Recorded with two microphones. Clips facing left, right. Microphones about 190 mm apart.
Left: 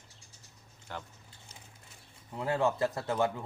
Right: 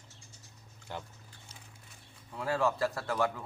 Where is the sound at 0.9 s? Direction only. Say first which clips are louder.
Right 1 dB; 15° right (ahead or behind).